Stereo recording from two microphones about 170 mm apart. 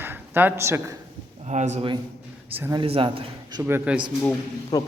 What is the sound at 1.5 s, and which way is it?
Speech, 40° right (ahead or behind).